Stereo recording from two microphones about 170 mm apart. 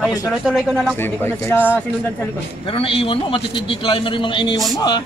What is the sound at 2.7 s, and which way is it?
A man's voice, 30° left (ahead or behind).